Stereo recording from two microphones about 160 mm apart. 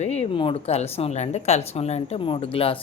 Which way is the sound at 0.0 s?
45° left (ahead or behind).